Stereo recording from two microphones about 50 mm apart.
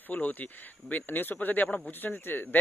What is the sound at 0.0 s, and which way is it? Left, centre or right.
Speech, left.